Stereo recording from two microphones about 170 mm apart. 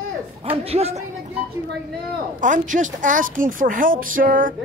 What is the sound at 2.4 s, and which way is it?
A woman's voice, 50° right (ahead or behind).